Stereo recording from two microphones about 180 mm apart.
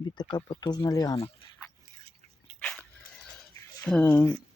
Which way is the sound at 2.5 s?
5° left (ahead or behind).